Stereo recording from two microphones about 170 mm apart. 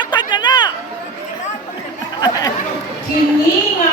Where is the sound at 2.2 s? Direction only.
25° left (ahead or behind).